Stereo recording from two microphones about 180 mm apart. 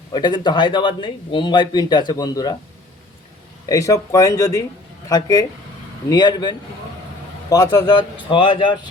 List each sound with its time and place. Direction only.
0.1 s speech: 25° left (ahead or behind)
3.7 s speech: 20° left (ahead or behind)